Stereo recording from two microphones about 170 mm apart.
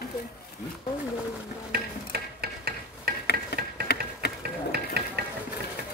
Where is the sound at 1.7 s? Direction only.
70° right (ahead or behind).